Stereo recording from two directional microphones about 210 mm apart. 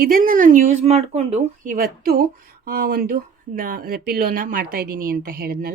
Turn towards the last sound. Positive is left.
turn(degrees=-45)  # may be behind; listen again after turning